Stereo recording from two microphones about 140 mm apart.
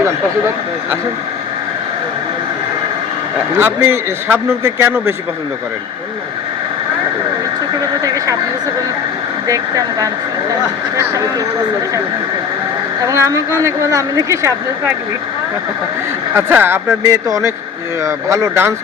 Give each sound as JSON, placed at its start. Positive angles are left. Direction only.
{"t": 3.6, "sound": "a man's voice", "side_deg": -15}
{"t": 8.0, "sound": "speech", "side_deg": -25}
{"t": 9.5, "sound": "speech", "side_deg": -25}
{"t": 13.1, "sound": "speech", "side_deg": -20}
{"t": 16.3, "sound": "a man's voice", "side_deg": -15}